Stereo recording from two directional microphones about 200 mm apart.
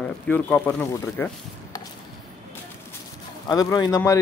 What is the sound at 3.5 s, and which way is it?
Speech, 20° left (ahead or behind).